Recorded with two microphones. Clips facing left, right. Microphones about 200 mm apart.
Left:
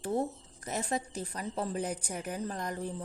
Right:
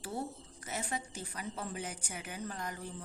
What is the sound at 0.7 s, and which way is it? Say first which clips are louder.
A woman's voice: left 6 dB; 35° left (ahead or behind).